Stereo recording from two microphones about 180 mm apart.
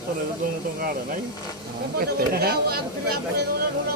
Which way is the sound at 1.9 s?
60° right (ahead or behind).